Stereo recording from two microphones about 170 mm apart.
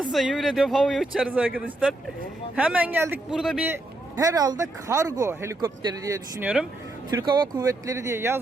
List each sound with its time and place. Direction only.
0.1 s a man's voice: centre (ahead or behind)
4.2 s a man's voice: 20° right (ahead or behind)